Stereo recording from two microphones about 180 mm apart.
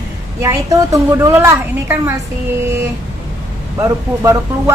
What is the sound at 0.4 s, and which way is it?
A woman's voice, 20° right (ahead or behind).